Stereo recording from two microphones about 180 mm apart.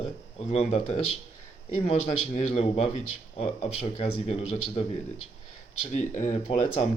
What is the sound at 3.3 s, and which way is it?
Speech, 35° left (ahead or behind).